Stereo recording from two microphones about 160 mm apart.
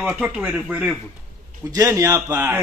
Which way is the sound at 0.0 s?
5° right (ahead or behind).